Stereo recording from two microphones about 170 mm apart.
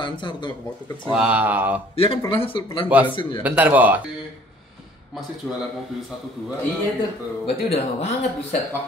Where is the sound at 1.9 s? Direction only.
35° left (ahead or behind).